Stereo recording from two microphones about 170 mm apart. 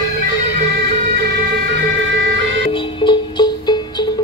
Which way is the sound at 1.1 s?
75° right (ahead or behind).